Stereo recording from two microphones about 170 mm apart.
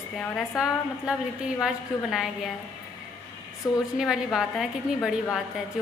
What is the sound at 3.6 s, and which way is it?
Speech, 20° left (ahead or behind).